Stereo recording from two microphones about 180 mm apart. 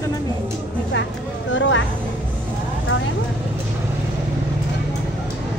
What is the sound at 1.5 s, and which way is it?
Vehicle, 90° left.